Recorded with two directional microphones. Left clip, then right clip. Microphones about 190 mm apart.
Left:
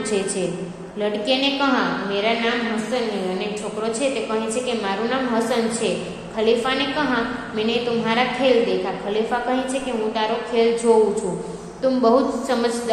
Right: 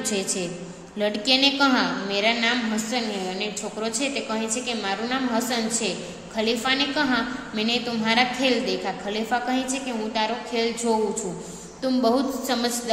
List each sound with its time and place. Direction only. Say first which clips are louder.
1.0 s a woman's voice: even; 30° right (ahead or behind)